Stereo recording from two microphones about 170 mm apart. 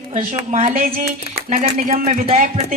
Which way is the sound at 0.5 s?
50° right (ahead or behind).